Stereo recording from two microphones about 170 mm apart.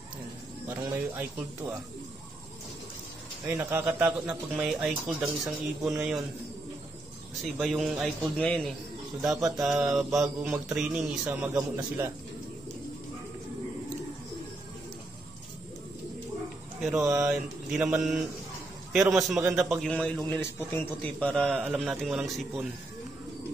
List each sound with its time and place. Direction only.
0.7 s speech: 15° right (ahead or behind)
3.4 s a man's voice: 10° right (ahead or behind)
7.5 s a man's voice: centre (ahead or behind)
17.0 s a man's voice: 5° right (ahead or behind)